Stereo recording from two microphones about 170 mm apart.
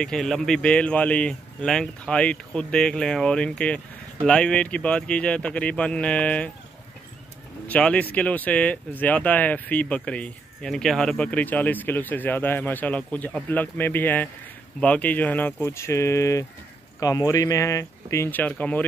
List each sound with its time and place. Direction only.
0.0 s speech: 5° left (ahead or behind)
7.6 s speech: 10° left (ahead or behind)